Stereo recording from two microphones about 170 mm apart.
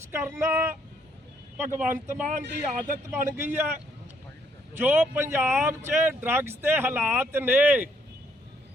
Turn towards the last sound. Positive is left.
turn(degrees=-10)  # may be behind; listen again after turning